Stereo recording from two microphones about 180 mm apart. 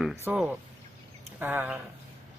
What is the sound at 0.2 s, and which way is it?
Speech, 10° right (ahead or behind).